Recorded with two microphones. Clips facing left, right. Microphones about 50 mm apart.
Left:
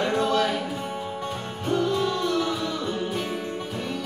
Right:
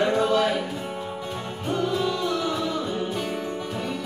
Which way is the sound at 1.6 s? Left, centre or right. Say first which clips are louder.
Left 1 dB; centre.